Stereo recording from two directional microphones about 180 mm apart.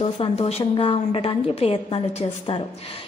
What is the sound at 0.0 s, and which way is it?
A woman's voice, 35° left (ahead or behind).